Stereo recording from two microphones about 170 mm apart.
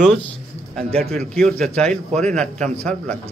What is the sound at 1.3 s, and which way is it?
A man's voice, 5° left (ahead or behind).